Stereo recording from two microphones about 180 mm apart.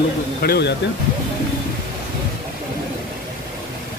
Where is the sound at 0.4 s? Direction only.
65° left (ahead or behind).